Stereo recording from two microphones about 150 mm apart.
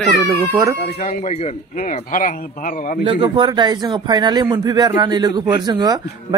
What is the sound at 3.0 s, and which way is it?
Speech, 30° right (ahead or behind).